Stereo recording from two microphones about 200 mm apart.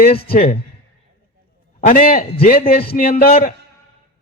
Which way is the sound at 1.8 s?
45° left (ahead or behind).